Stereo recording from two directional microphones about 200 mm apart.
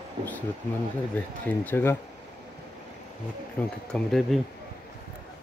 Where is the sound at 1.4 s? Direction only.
10° left (ahead or behind).